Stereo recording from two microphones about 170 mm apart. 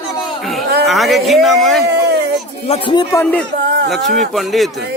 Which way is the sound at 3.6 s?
90° right.